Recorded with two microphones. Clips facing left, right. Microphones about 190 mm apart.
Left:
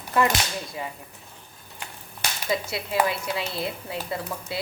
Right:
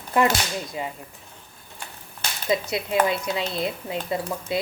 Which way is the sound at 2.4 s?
20° right (ahead or behind).